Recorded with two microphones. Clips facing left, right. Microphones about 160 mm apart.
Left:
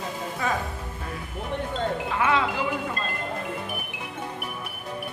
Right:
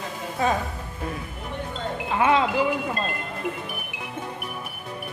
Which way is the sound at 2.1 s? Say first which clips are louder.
Right 4 dB; 25° right (ahead or behind).